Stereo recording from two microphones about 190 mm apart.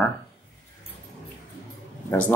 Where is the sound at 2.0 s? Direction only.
10° left (ahead or behind).